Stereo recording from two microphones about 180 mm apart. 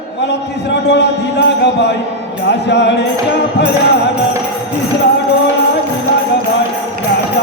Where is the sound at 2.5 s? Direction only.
75° left (ahead or behind).